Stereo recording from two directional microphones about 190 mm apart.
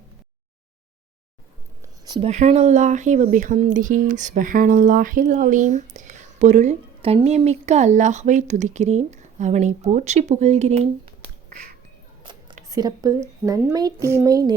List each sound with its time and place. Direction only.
2.0 s speech: 20° right (ahead or behind)
2.3 s speech: 35° right (ahead or behind)
11.5 s finger snapping: 50° right (ahead or behind)
12.6 s a child's voice: 20° right (ahead or behind)